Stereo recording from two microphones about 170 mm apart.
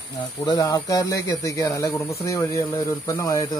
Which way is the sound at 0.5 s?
20° left (ahead or behind).